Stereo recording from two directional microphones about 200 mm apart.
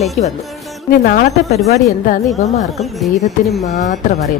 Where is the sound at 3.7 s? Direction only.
35° left (ahead or behind).